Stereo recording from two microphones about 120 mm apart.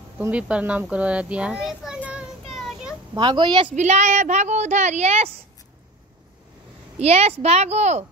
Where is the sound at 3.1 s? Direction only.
40° right (ahead or behind).